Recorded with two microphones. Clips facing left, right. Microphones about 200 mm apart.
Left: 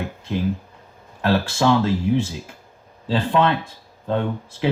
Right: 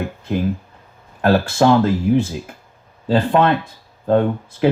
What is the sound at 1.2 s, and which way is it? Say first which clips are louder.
Speech: right 5 dB; 55° right (ahead or behind).